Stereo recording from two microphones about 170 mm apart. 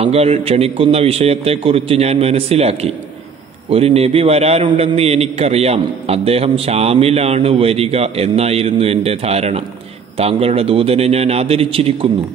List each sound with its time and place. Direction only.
0.0 s a man's voice: 35° right (ahead or behind)